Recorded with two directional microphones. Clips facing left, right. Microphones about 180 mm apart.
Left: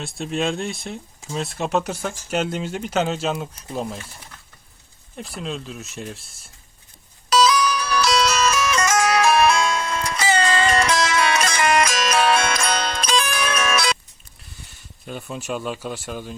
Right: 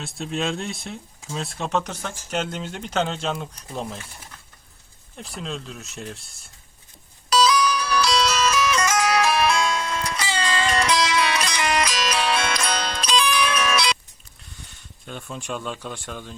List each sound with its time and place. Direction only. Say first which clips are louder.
0.0 s speech: left 3 dB; centre (ahead or behind)
5.1 s speech: left 3 dB; centre (ahead or behind)
7.3 s music: left 1 dB; 50° left (ahead or behind)
15.0 s speech: left 3 dB; 5° left (ahead or behind)